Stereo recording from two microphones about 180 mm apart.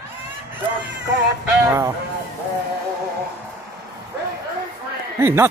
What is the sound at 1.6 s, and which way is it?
Speech, 15° right (ahead or behind).